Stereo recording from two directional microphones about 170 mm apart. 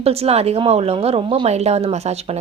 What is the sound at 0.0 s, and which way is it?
A woman's voice, 35° right (ahead or behind).